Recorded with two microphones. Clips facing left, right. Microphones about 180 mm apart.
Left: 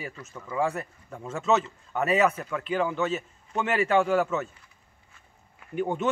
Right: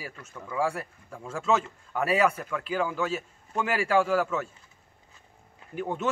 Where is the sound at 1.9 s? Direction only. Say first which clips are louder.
Left 1 dB; 5° right (ahead or behind).